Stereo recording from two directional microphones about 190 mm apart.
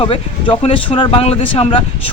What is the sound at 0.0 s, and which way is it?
Speech, 25° left (ahead or behind).